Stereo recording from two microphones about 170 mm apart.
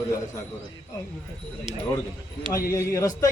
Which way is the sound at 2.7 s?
20° left (ahead or behind).